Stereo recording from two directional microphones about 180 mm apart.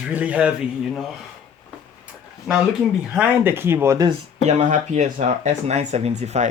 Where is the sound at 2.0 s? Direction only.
5° right (ahead or behind).